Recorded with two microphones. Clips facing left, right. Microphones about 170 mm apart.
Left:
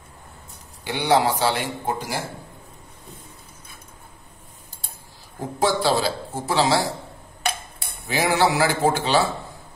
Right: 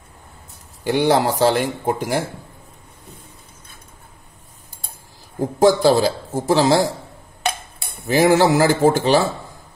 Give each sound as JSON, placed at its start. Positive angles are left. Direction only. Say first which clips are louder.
{"t": 0.8, "sound": "speech", "louder": "right 3 dB", "side_deg": -45}
{"t": 5.6, "sound": "speech", "louder": "right 7 dB", "side_deg": -45}
{"t": 8.1, "sound": "speech", "louder": "right 6 dB", "side_deg": -45}